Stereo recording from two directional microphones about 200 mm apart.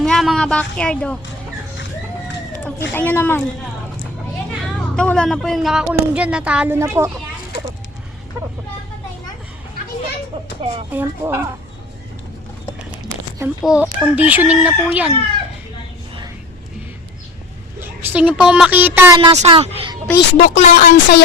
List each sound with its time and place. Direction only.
0.0 s a woman's voice: centre (ahead or behind)
2.9 s speech: 10° left (ahead or behind)
4.9 s speech: 5° left (ahead or behind); by 7.1 s 15° right (ahead or behind)
10.9 s speech: 10° right (ahead or behind)
13.6 s speech: 5° right (ahead or behind)
17.7 s a woman's voice: 10° right (ahead or behind)
19.4 s speech: 30° right (ahead or behind)
20.3 s speech: 35° left (ahead or behind)